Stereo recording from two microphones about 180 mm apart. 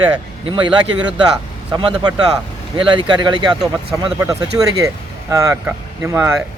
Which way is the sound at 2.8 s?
25° right (ahead or behind).